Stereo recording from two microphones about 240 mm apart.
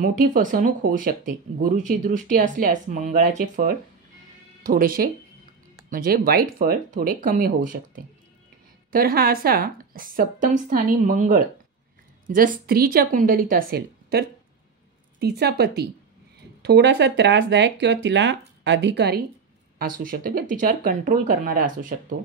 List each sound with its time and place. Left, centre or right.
0.0 s speech: right